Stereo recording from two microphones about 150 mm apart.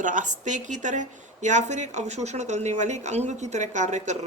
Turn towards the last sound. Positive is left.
turn(degrees=-50)  # may be behind; listen again after turning